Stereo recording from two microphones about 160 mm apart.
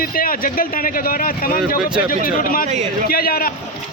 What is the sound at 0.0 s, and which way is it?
A man's voice, 60° left (ahead or behind).